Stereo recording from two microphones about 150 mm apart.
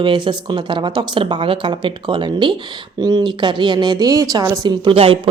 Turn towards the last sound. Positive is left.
turn(degrees=-35)  # may be behind; listen again after turning